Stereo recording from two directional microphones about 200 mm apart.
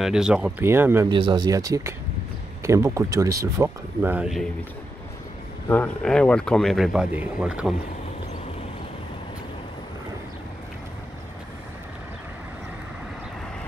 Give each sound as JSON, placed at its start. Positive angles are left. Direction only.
{"t": 0.0, "sound": "speech", "side_deg": -5}
{"t": 5.7, "sound": "speech", "side_deg": 5}